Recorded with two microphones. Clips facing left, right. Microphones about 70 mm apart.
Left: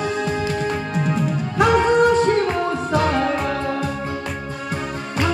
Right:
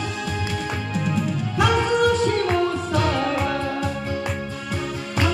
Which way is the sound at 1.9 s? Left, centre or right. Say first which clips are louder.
Left 4 dB; left.